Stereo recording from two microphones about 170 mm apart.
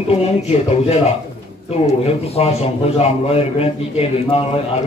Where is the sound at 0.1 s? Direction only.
35° left (ahead or behind).